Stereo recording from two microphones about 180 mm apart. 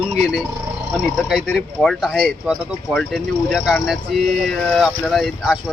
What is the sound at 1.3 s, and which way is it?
Speech, centre (ahead or behind).